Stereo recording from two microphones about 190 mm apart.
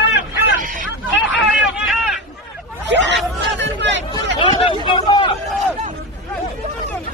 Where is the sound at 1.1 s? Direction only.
75° left (ahead or behind).